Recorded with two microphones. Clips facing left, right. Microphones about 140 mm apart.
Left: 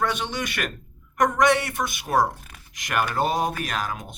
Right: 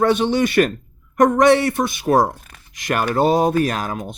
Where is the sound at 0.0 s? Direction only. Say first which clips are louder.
Right 10 dB; 30° right (ahead or behind).